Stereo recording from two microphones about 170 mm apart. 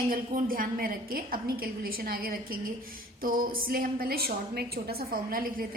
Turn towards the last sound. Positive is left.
turn(degrees=-60)  # may be behind; listen again after turning